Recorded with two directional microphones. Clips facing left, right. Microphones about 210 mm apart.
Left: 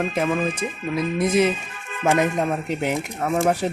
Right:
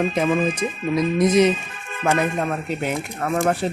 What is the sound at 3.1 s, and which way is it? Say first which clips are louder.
Speech: even; 5° left (ahead or behind).